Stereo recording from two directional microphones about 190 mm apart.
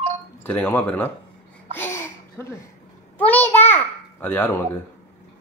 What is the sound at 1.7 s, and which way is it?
Babbling, 10° left (ahead or behind).